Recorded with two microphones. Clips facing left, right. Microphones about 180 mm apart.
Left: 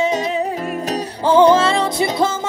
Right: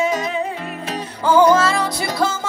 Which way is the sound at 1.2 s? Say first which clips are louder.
Left 2 dB; 30° left (ahead or behind).